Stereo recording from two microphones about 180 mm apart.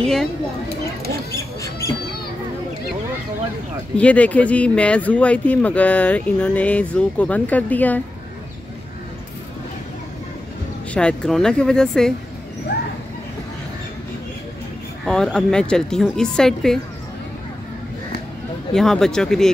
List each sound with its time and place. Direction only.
0.0 s a woman's voice: 5° left (ahead or behind)
3.9 s speech: 5° left (ahead or behind)
10.9 s a woman's voice: 5° left (ahead or behind)
12.7 s a sound: 65° left (ahead or behind)
15.0 s a woman's voice: 5° left (ahead or behind)
18.7 s a woman's voice: 5° left (ahead or behind)